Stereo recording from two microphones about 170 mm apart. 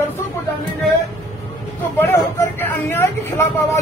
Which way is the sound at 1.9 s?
15° left (ahead or behind).